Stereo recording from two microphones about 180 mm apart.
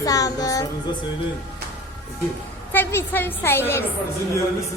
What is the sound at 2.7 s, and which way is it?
A woman's voice, 10° left (ahead or behind).